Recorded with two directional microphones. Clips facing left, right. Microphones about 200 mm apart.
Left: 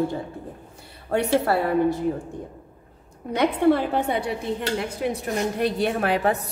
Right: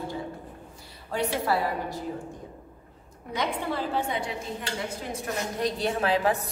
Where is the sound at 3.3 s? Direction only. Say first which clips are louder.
Left 11 dB; 60° left (ahead or behind).